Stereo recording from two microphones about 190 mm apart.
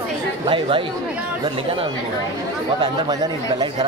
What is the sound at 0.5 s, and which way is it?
Speech, 25° right (ahead or behind).